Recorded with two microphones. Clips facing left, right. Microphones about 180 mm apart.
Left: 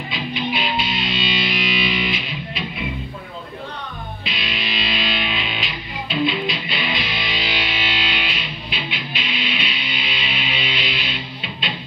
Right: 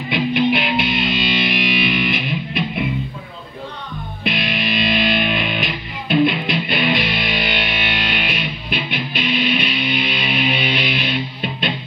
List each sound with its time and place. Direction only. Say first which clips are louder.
0.1 s music: right 9 dB; 60° right (ahead or behind)
4.2 s music: right 9 dB; 55° right (ahead or behind)